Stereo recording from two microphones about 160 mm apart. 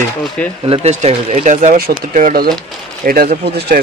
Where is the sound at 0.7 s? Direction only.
40° right (ahead or behind); by 3.3 s 65° right (ahead or behind).